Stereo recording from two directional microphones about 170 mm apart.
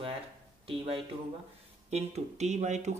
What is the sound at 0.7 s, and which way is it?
Speech, 35° right (ahead or behind).